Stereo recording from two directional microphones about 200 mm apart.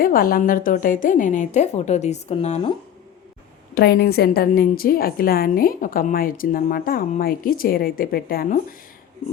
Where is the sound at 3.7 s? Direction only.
55° left (ahead or behind).